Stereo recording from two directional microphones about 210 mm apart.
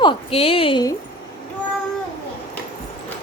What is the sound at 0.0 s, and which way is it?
Speech, 25° left (ahead or behind).